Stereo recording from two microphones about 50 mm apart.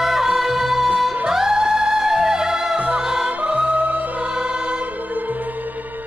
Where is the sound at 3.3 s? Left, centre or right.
Right.